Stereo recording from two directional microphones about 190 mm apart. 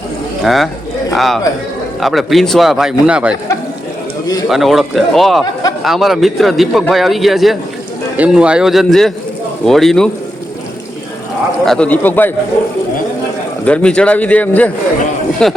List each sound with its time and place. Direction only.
0.4 s a man's voice: centre (ahead or behind)
4.4 s a man's voice: centre (ahead or behind)
11.6 s a man's voice: 5° left (ahead or behind)
13.7 s a man's voice: 5° left (ahead or behind)